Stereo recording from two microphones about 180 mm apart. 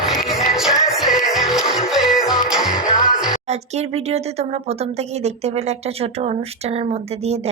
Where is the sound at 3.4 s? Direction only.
35° right (ahead or behind).